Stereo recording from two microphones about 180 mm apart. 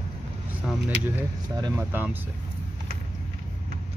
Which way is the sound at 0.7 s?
Centre (ahead or behind).